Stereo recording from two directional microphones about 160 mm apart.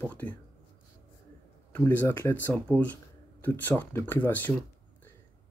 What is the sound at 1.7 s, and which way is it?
Speech, 15° left (ahead or behind).